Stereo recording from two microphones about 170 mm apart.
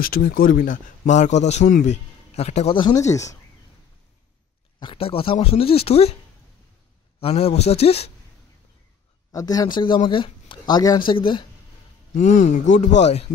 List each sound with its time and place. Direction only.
0.0 s a man's voice: 60° left (ahead or behind); by 3.3 s 20° left (ahead or behind)
4.7 s speech: 30° left (ahead or behind)
7.2 s speech: 35° left (ahead or behind)
9.3 s speech: 20° left (ahead or behind)
12.2 s a man's voice: 45° left (ahead or behind)